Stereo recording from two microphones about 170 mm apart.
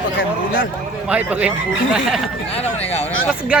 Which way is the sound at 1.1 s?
10° right (ahead or behind).